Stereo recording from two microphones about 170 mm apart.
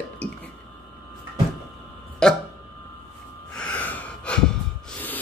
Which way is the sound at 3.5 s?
5° left (ahead or behind).